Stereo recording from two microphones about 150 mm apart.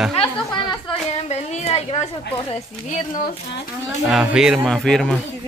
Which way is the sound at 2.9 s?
60° left (ahead or behind).